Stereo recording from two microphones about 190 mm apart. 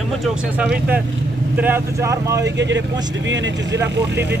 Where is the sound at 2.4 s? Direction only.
65° right (ahead or behind).